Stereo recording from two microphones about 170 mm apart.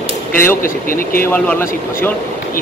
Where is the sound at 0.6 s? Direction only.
55° left (ahead or behind).